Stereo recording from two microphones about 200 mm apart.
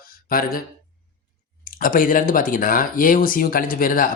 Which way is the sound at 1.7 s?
45° left (ahead or behind).